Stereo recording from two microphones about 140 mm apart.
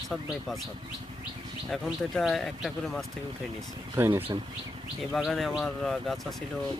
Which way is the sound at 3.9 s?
20° right (ahead or behind).